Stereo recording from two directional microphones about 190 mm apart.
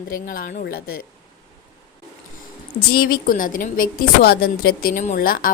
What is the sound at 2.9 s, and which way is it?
A woman's voice, 50° left (ahead or behind).